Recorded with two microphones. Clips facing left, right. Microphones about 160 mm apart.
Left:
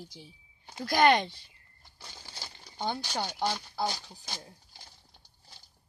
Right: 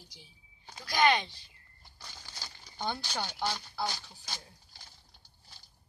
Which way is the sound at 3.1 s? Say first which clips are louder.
Left 3 dB; 20° left (ahead or behind).